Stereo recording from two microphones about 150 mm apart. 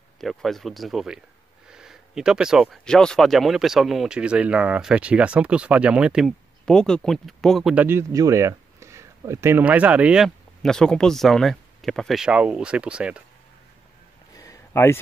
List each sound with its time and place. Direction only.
0.2 s speech: centre (ahead or behind)
7.8 s speech: 15° right (ahead or behind)
14.3 s a sound: 20° left (ahead or behind)